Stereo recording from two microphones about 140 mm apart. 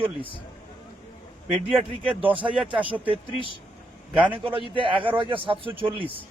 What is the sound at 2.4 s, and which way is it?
Speech, 5° right (ahead or behind).